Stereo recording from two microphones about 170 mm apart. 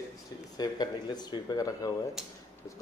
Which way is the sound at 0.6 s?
25° left (ahead or behind).